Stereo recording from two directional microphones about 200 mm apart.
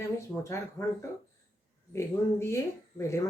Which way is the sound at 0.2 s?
15° left (ahead or behind).